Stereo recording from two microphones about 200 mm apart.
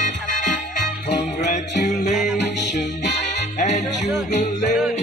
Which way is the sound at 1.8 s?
35° left (ahead or behind).